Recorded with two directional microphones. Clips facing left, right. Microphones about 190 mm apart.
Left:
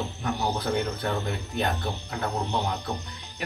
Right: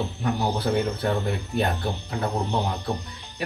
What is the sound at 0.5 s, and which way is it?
Speech, 5° right (ahead or behind).